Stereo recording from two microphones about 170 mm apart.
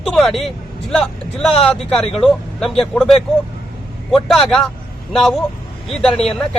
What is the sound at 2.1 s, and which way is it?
A man's voice, centre (ahead or behind).